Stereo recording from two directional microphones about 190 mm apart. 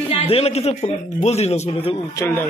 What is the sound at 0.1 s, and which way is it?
A man's voice, 30° left (ahead or behind).